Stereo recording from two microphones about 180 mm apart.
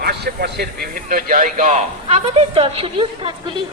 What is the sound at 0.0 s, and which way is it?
A man's voice, 60° right (ahead or behind).